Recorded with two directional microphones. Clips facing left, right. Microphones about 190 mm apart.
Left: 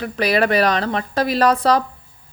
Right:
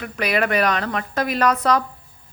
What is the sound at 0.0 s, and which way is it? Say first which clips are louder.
A woman's voice: left 4 dB; 35° left (ahead or behind).